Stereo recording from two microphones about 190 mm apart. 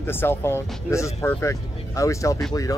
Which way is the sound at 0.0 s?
10° left (ahead or behind).